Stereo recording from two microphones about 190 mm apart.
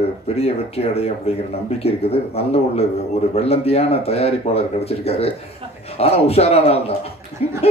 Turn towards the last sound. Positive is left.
turn(degrees=35)  # may be behind; listen again after turning